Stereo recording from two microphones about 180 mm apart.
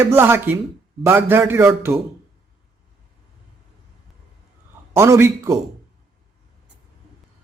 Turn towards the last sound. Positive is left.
turn(degrees=-15)  # may be behind; listen again after turning